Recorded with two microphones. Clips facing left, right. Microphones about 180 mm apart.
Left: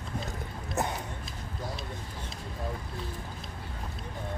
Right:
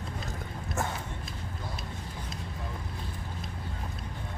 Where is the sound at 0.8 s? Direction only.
20° left (ahead or behind).